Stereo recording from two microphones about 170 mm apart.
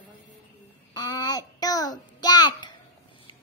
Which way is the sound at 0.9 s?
20° left (ahead or behind).